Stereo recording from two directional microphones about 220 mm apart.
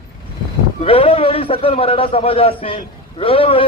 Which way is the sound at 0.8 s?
25° left (ahead or behind).